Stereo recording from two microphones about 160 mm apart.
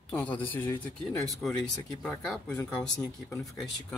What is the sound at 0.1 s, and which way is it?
Speech, 10° left (ahead or behind).